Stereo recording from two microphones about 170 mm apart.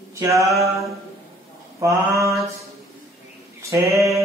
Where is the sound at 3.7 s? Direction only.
20° right (ahead or behind).